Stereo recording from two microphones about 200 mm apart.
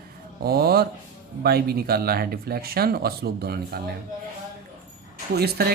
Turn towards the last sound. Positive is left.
turn(degrees=-55)  # may be behind; listen again after turning